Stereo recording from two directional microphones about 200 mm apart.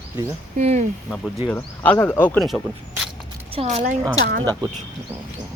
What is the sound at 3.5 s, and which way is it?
Speech, 30° right (ahead or behind).